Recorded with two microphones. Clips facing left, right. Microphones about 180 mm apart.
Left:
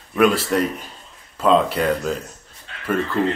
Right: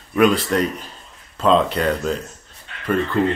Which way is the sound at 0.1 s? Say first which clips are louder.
Right 1 dB; 5° left (ahead or behind).